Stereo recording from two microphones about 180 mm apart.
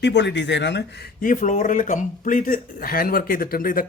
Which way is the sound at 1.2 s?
45° left (ahead or behind).